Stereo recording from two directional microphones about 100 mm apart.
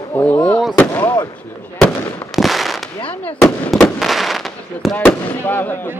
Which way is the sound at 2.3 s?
Centre (ahead or behind).